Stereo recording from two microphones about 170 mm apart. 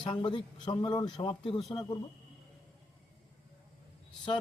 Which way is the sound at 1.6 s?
Centre (ahead or behind).